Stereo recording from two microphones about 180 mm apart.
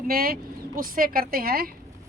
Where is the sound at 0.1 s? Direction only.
55° right (ahead or behind).